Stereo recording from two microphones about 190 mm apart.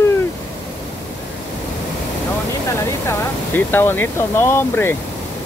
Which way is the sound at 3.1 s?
10° left (ahead or behind).